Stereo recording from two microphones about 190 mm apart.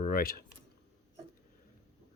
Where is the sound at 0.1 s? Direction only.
50° left (ahead or behind).